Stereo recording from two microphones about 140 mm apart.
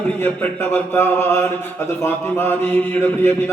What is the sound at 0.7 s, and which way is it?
Speech, 15° left (ahead or behind).